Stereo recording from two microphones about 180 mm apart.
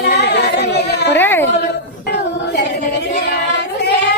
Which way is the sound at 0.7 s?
65° left (ahead or behind).